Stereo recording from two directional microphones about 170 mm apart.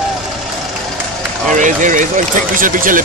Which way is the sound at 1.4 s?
45° right (ahead or behind).